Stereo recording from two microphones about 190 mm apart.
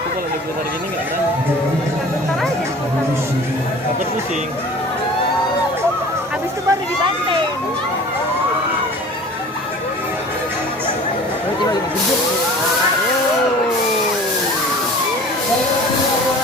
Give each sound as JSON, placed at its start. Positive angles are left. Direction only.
{"t": 6.7, "sound": "speech", "side_deg": -25}